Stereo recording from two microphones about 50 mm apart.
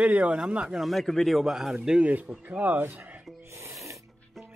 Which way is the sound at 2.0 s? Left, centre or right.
Right.